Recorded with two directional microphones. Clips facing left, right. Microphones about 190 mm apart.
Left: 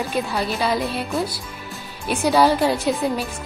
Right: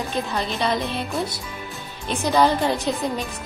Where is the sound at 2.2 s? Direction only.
10° left (ahead or behind).